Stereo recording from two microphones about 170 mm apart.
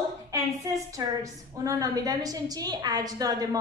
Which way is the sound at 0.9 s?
20° right (ahead or behind).